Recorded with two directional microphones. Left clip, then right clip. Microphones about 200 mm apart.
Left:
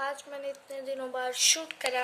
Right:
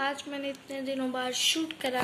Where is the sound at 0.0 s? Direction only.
5° left (ahead or behind).